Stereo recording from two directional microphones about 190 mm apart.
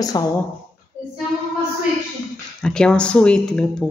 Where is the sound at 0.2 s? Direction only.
20° left (ahead or behind).